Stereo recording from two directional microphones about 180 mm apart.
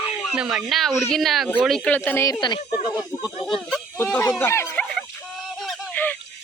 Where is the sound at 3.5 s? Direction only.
Centre (ahead or behind).